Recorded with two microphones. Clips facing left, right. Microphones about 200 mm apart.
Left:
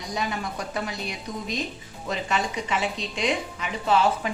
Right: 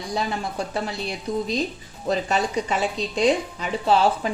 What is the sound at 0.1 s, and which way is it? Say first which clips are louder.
A woman's voice: right 2 dB; 30° right (ahead or behind).